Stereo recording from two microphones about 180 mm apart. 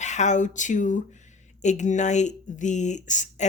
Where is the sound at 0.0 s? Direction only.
40° left (ahead or behind).